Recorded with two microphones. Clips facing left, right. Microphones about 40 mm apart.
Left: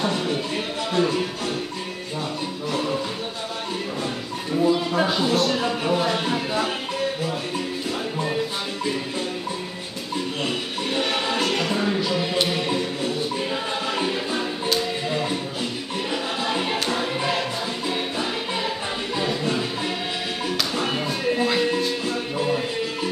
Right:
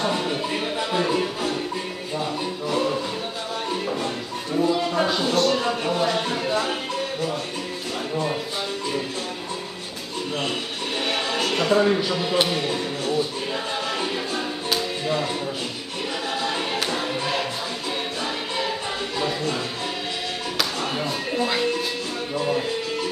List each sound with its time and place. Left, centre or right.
0.0 s music: centre
2.7 s music: centre
4.6 s speech: centre
11.0 s music: centre
16.4 s music: centre
20.8 s music: centre